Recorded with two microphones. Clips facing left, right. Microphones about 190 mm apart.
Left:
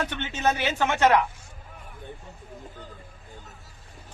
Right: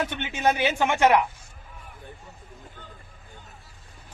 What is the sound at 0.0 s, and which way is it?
A man's voice, 10° right (ahead or behind).